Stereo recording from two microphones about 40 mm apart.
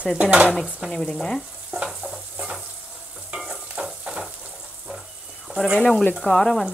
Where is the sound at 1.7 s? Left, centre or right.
Right.